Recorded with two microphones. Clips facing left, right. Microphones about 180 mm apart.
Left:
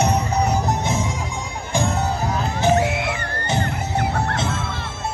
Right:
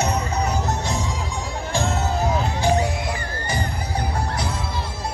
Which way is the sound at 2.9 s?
70° left (ahead or behind).